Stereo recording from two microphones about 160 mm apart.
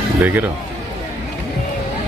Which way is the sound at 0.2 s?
10° right (ahead or behind).